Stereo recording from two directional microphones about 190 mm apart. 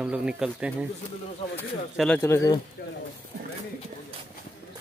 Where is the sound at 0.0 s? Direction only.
5° right (ahead or behind).